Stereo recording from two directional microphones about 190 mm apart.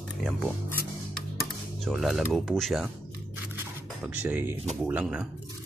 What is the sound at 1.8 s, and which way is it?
Speech, centre (ahead or behind).